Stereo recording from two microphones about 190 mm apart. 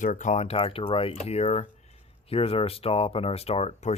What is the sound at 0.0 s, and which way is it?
Speech, 40° left (ahead or behind).